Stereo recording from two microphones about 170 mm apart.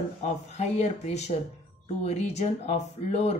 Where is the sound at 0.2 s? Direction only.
40° left (ahead or behind).